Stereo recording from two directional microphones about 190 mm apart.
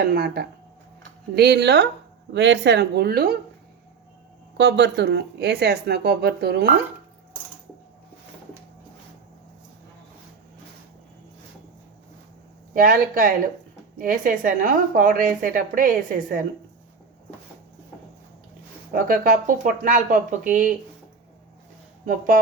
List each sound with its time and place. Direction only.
0.1 s speech: 55° right (ahead or behind)
4.5 s speech: 65° right (ahead or behind)
12.7 s a woman's voice: 50° right (ahead or behind)
18.9 s a woman's voice: 45° right (ahead or behind)
22.0 s a woman's voice: 45° right (ahead or behind)